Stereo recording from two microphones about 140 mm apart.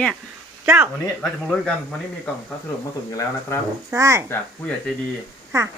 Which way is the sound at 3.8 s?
20° right (ahead or behind).